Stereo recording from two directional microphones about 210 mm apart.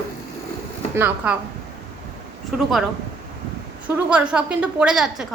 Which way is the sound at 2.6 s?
Centre (ahead or behind).